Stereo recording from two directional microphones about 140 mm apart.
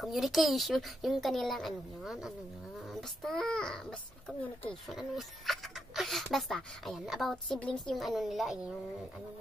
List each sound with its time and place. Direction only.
0.0 s speech: centre (ahead or behind)